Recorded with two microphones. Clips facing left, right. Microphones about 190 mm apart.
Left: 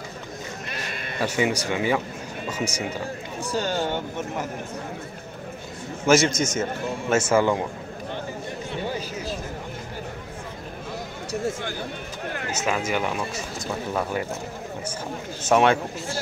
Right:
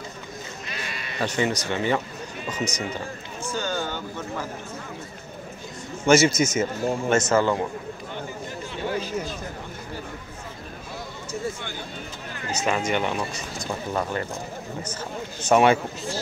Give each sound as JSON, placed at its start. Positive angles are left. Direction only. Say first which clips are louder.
{"t": 0.7, "sound": "sheep", "louder": "left 2 dB", "side_deg": 50}
{"t": 1.2, "sound": "speech", "louder": "left 1 dB", "side_deg": 10}
{"t": 3.5, "sound": "speech", "louder": "left 4 dB", "side_deg": 30}
{"t": 6.0, "sound": "a man's voice", "louder": "right 1 dB", "side_deg": -5}
{"t": 7.1, "sound": "speech", "louder": "left 2 dB", "side_deg": 10}
{"t": 12.6, "sound": "speech", "louder": "right 1 dB", "side_deg": 5}
{"t": 15.4, "sound": "speech", "louder": "right 1 dB", "side_deg": 0}